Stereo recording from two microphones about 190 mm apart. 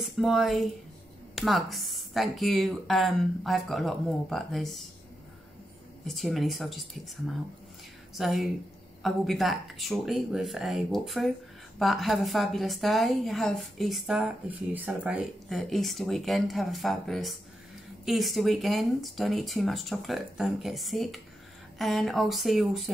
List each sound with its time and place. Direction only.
0.0 s a woman's voice: centre (ahead or behind)
6.0 s a woman's voice: centre (ahead or behind)
8.2 s a woman's voice: centre (ahead or behind)